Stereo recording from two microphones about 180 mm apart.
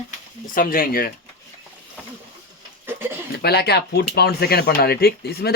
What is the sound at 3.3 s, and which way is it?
Speech, 65° left (ahead or behind).